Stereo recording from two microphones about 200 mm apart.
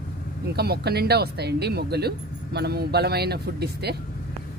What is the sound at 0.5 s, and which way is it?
Speech, 55° right (ahead or behind).